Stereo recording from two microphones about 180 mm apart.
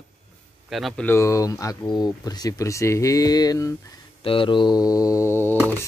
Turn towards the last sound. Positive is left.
turn(degrees=15)  # may be behind; listen again after turning